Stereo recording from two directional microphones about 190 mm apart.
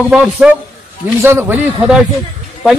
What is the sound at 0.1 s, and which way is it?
A man's voice, 5° right (ahead or behind).